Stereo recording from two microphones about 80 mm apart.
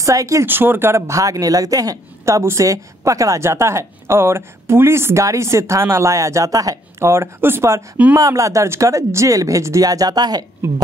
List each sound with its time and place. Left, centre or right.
0.0 s a woman's voice: right
0.5 s a woman's voice: right
7.1 s a woman's voice: right
10.6 s a woman's voice: right